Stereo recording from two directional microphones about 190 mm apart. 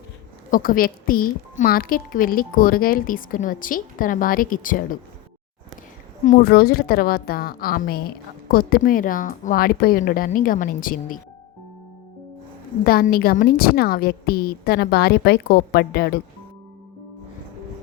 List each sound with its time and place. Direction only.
0.5 s a woman's voice: 50° left (ahead or behind)
6.2 s a woman's voice: 50° left (ahead or behind)
12.8 s a woman's voice: 50° left (ahead or behind)